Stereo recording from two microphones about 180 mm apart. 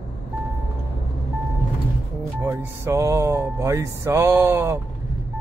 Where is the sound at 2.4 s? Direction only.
15° right (ahead or behind).